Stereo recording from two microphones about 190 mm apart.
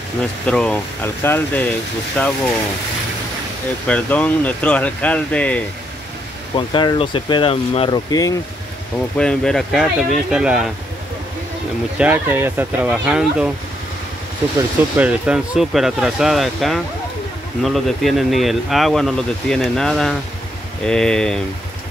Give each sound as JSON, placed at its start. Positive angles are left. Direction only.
{"t": 0.5, "sound": "speech", "side_deg": 5}
{"t": 3.8, "sound": "speech", "side_deg": 5}
{"t": 6.5, "sound": "speech", "side_deg": 25}
{"t": 9.2, "sound": "speech", "side_deg": 5}
{"t": 12.0, "sound": "speech", "side_deg": -10}
{"t": 15.0, "sound": "speech", "side_deg": -5}